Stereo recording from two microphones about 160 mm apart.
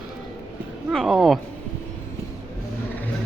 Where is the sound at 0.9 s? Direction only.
Centre (ahead or behind).